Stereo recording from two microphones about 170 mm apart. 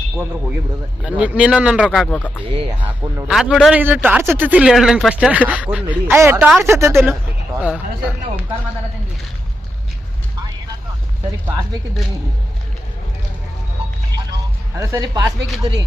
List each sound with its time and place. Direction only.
1.0 s a man's voice: 5° right (ahead or behind)
2.0 s speech: 10° left (ahead or behind)
2.5 s speech: 30° right (ahead or behind)
3.2 s a man's voice: centre (ahead or behind)
14.8 s speech: 20° right (ahead or behind)